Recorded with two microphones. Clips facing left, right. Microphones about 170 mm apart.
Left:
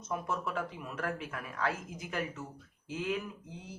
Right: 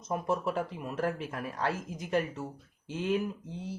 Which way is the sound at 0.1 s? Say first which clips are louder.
Right 5 dB; 40° right (ahead or behind).